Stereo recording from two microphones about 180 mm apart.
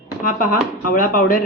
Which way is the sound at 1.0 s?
50° left (ahead or behind).